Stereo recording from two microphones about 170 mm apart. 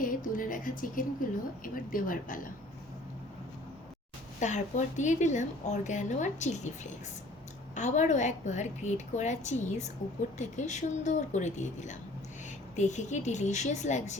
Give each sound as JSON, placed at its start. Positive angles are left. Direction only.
{"t": 0.0, "sound": "a sound", "side_deg": 55}
{"t": 1.6, "sound": "a woman's voice", "side_deg": 55}
{"t": 4.4, "sound": "a woman's voice", "side_deg": 45}
{"t": 7.8, "sound": "a woman's voice", "side_deg": 45}